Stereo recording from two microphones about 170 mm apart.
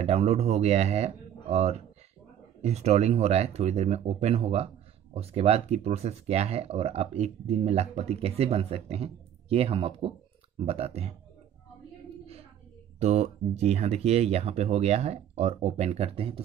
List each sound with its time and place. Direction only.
0.0 s speech: 35° right (ahead or behind)
13.0 s speech: 40° right (ahead or behind)